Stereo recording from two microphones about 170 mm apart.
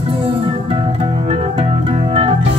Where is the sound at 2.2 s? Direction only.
30° right (ahead or behind).